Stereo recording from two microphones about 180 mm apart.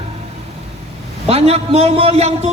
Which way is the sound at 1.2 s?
35° right (ahead or behind).